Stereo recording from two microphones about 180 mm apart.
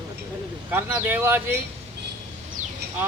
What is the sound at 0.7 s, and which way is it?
Speech, 10° right (ahead or behind).